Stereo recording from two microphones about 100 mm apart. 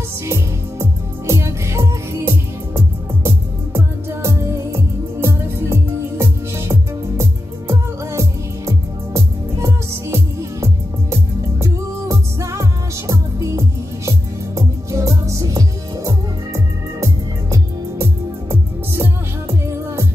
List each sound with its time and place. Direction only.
0.3 s music: 30° right (ahead or behind)